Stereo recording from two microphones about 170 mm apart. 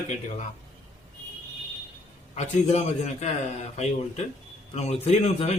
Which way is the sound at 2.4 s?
45° left (ahead or behind).